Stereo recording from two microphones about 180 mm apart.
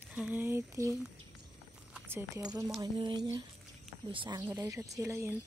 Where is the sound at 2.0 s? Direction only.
15° right (ahead or behind).